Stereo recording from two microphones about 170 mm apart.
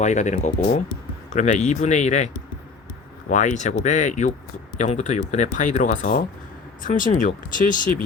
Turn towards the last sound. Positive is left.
turn(degrees=50)  # may be behind; listen again after turning